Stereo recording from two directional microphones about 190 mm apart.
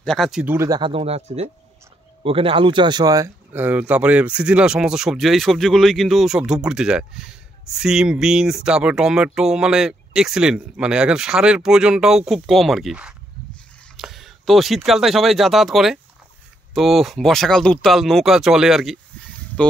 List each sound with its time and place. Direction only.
0.0 s speech: centre (ahead or behind)